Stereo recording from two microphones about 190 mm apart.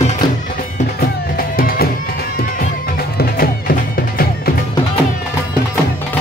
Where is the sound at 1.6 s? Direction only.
50° left (ahead or behind).